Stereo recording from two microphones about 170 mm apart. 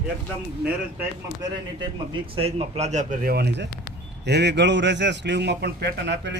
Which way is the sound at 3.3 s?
80° right.